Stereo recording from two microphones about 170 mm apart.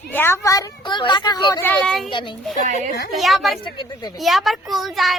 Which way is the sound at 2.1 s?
30° left (ahead or behind).